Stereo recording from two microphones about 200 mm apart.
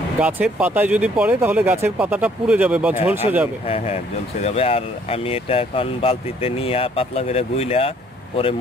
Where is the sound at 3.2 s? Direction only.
30° left (ahead or behind).